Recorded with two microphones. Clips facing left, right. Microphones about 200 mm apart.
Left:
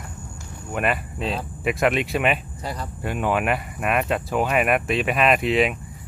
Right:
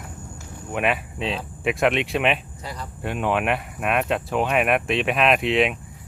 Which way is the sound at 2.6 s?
40° left (ahead or behind).